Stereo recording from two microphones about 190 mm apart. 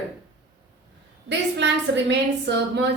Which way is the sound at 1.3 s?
70° right (ahead or behind).